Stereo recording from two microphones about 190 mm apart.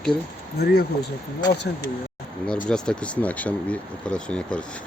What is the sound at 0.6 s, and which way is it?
Speech, 55° left (ahead or behind).